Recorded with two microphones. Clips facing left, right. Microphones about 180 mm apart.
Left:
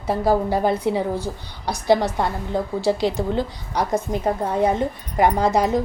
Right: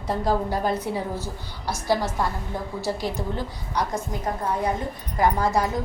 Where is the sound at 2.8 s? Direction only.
70° left (ahead or behind).